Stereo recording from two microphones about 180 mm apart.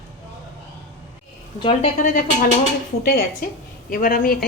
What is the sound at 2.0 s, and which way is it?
A woman's voice, 45° left (ahead or behind).